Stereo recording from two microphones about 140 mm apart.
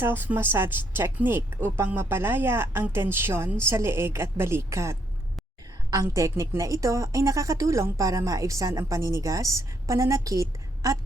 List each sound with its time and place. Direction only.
0.0 s speech: 15° right (ahead or behind)